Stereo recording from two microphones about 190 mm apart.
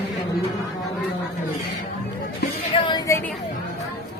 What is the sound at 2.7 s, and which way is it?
Speech, 25° left (ahead or behind).